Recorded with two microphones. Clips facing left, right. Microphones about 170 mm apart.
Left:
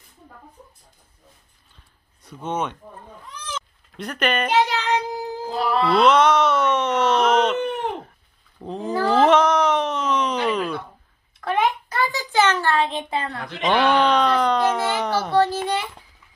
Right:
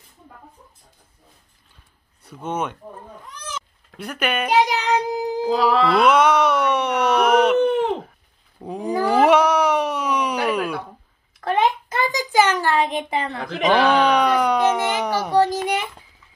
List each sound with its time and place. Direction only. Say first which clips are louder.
2.2 s a child's voice: even; 10° right (ahead or behind)
4.0 s a child's voice: left 1 dB; 10° right (ahead or behind)
5.1 s a sound: right 5 dB; 20° right (ahead or behind)
5.5 s music: right 4 dB; 90° right
5.9 s a child's voice: left 2 dB; 10° right (ahead or behind)
8.6 s a sound: right 1 dB; 10° right (ahead or behind)
13.8 s a child's voice: right 1 dB; 10° right (ahead or behind)